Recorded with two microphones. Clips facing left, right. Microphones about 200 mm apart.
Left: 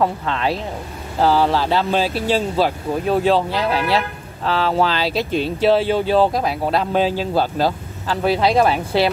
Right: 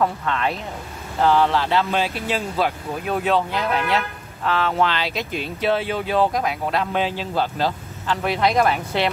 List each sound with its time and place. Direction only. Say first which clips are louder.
0.0 s speech: left 2 dB; 30° left (ahead or behind)